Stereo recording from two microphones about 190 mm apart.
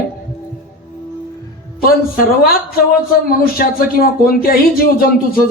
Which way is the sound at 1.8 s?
50° left (ahead or behind).